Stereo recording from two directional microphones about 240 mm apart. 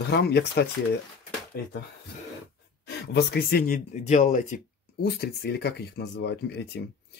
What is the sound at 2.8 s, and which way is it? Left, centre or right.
Speech, left.